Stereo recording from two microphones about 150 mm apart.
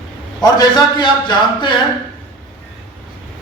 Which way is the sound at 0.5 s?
30° left (ahead or behind).